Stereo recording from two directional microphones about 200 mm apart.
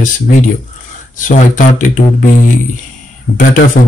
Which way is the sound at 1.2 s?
40° left (ahead or behind).